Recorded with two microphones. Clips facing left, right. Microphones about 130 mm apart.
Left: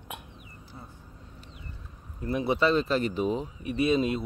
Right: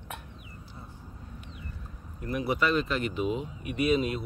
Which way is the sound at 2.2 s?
25° left (ahead or behind).